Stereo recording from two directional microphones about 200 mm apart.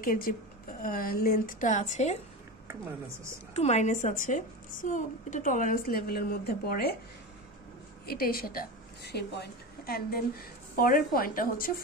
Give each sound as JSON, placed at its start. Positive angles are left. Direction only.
{"t": 0.0, "sound": "a woman's voice", "side_deg": 45}
{"t": 3.5, "sound": "a woman's voice", "side_deg": 35}
{"t": 8.1, "sound": "a woman's voice", "side_deg": 50}